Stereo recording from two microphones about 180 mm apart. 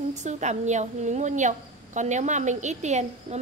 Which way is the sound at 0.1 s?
40° right (ahead or behind).